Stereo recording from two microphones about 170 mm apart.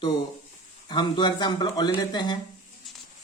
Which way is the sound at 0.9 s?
25° left (ahead or behind).